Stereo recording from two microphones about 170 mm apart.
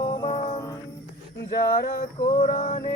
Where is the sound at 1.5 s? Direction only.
65° left (ahead or behind).